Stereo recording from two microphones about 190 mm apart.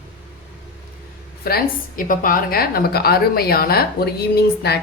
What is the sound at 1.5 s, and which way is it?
A woman's voice, 50° left (ahead or behind).